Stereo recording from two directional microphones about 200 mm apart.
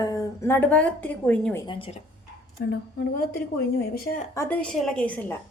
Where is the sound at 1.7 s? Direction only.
25° left (ahead or behind).